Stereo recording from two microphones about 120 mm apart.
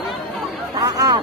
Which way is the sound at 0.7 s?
30° right (ahead or behind).